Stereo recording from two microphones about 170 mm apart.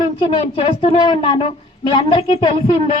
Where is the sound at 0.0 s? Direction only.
30° left (ahead or behind).